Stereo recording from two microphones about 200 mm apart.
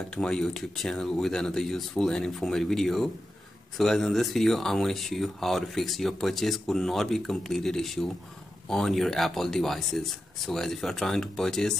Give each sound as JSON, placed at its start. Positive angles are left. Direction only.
{"t": 0.1, "sound": "speech", "side_deg": 5}